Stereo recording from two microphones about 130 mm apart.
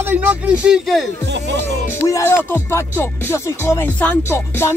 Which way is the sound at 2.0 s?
20° left (ahead or behind).